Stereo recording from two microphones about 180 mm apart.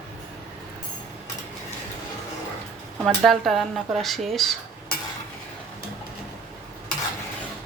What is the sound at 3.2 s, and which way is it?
Speech, centre (ahead or behind).